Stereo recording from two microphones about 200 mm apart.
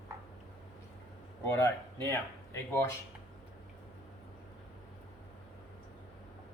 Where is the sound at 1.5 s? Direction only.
15° left (ahead or behind).